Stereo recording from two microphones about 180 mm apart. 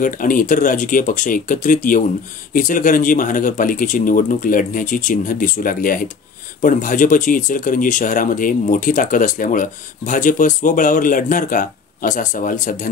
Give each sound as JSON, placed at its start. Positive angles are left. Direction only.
{"t": 0.0, "sound": "speech", "side_deg": 50}